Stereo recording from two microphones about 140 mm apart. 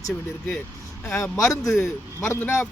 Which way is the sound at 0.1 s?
10° left (ahead or behind).